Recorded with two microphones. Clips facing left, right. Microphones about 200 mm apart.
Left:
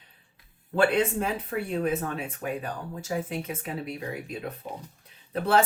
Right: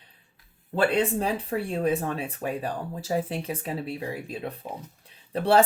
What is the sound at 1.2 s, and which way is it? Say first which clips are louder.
Speech: right 2 dB; 35° right (ahead or behind).